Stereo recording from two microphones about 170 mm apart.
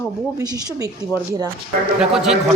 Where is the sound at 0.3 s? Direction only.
20° right (ahead or behind).